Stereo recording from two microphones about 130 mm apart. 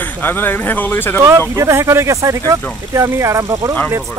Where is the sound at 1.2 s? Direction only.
25° right (ahead or behind).